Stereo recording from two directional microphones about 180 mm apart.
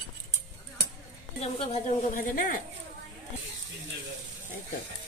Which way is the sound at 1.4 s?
45° left (ahead or behind).